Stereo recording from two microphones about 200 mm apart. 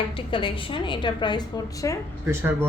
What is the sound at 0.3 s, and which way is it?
A woman's voice, 25° left (ahead or behind).